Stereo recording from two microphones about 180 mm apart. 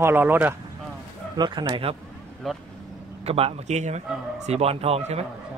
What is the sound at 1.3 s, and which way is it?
Speech, 25° right (ahead or behind).